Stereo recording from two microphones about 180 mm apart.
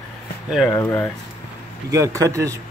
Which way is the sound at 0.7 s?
10° left (ahead or behind).